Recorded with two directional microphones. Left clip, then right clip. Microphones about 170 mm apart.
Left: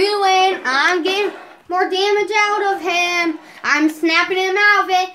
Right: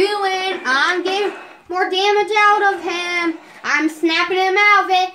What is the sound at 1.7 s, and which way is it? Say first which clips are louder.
Child singing: even; 60° left (ahead or behind).